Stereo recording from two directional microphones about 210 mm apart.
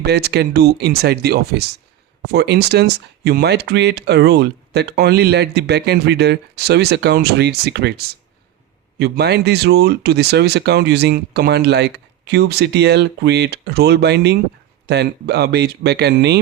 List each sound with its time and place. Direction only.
0.0 s speech: 50° right (ahead or behind)